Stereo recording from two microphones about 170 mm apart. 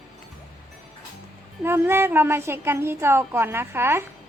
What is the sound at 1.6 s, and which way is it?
A woman's voice, 15° right (ahead or behind).